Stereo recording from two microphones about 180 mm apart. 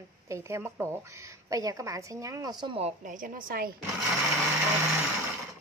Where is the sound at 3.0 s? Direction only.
50° right (ahead or behind).